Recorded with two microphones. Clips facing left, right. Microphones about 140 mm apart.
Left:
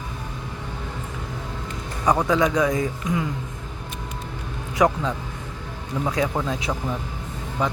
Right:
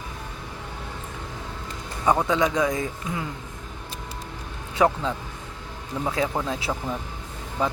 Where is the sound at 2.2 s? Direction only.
25° right (ahead or behind).